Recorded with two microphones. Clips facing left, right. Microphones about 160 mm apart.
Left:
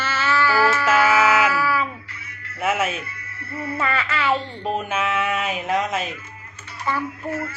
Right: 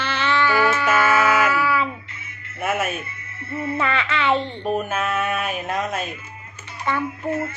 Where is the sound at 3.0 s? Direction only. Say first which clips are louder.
Right 2 dB; 20° right (ahead or behind).